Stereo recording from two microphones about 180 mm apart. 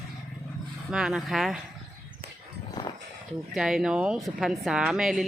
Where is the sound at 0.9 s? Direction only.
5° right (ahead or behind).